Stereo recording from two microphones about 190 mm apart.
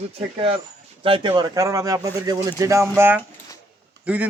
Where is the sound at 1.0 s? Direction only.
25° right (ahead or behind).